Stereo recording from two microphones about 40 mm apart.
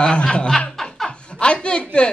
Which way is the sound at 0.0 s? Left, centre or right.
Left.